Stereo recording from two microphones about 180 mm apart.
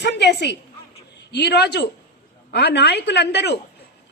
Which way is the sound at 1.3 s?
70° left (ahead or behind).